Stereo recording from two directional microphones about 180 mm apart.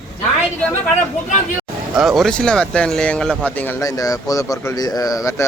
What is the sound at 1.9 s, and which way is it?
Speech, centre (ahead or behind).